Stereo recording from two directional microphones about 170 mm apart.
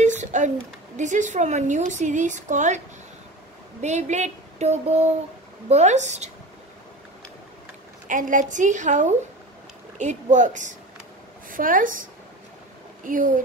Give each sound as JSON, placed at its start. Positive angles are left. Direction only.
{"t": 0.0, "sound": "a sound", "side_deg": -45}
{"t": 0.9, "sound": "a woman's voice", "side_deg": -45}
{"t": 3.8, "sound": "a woman's voice", "side_deg": -45}
{"t": 8.1, "sound": "a woman's voice", "side_deg": -50}